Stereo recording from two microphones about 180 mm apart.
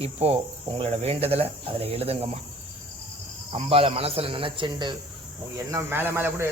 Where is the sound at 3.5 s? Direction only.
30° right (ahead or behind).